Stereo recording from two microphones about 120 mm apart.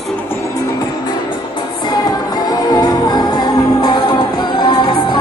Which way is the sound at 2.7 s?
35° left (ahead or behind).